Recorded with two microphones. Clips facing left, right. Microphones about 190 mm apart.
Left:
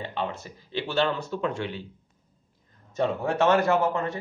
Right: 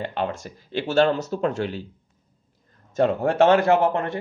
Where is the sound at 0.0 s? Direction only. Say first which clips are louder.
Right 4 dB; 50° right (ahead or behind).